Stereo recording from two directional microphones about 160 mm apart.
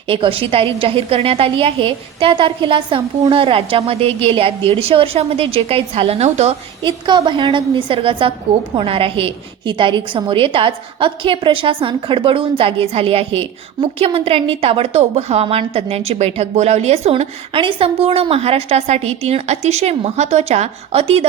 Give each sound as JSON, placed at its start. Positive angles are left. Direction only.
{"t": 0.1, "sound": "a woman's voice", "side_deg": -35}
{"t": 6.8, "sound": "a woman's voice", "side_deg": -30}